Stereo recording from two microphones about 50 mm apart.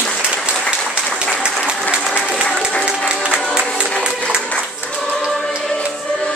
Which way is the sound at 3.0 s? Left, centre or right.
Right.